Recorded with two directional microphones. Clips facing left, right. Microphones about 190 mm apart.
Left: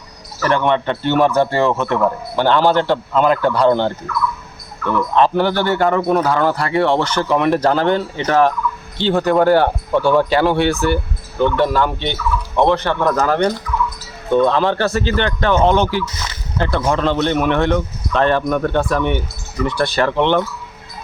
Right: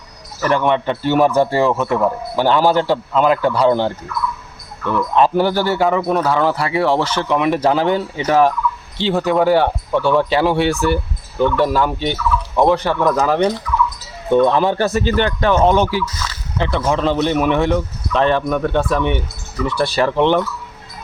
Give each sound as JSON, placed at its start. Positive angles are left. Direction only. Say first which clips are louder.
{"t": 0.4, "sound": "a man's voice", "louder": "even", "side_deg": 0}
{"t": 5.1, "sound": "a man's voice", "louder": "right 1 dB", "side_deg": -5}
{"t": 14.3, "sound": "speech", "louder": "right 1 dB", "side_deg": -15}
{"t": 16.1, "sound": "a sound", "louder": "right 1 dB", "side_deg": 20}
{"t": 16.7, "sound": "a man's voice", "louder": "even", "side_deg": 0}